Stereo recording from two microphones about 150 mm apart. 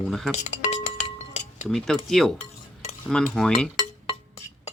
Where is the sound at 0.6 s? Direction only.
45° left (ahead or behind).